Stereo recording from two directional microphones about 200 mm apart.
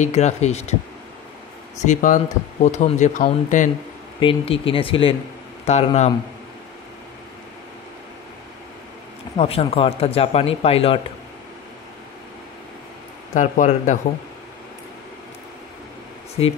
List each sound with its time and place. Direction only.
0.0 s speech: 35° left (ahead or behind)
1.8 s speech: 40° left (ahead or behind)
4.2 s speech: 25° left (ahead or behind)
9.4 s speech: 30° left (ahead or behind)
13.3 s speech: 40° left (ahead or behind)
16.4 s speech: 30° left (ahead or behind)